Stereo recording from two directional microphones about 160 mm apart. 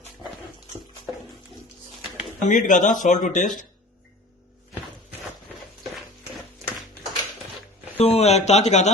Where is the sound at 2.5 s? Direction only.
55° left (ahead or behind).